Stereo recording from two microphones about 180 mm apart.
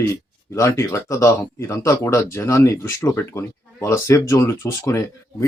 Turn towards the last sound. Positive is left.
turn(degrees=15)  # may be behind; listen again after turning